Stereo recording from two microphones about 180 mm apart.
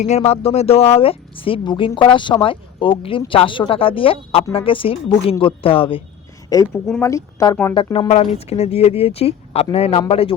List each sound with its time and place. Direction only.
0.0 s speech: 35° left (ahead or behind)
6.5 s speech: 20° left (ahead or behind)